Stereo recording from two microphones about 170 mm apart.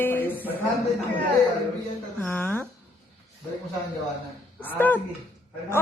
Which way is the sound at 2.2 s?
10° left (ahead or behind).